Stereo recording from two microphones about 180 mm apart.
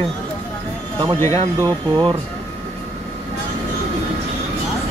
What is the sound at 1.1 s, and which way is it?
Speech, 15° left (ahead or behind).